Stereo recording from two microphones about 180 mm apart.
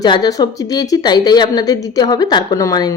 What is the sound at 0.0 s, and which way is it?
Speech, 20° left (ahead or behind).